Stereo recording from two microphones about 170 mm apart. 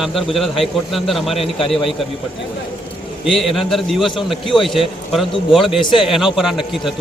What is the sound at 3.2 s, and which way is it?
A man's voice, centre (ahead or behind).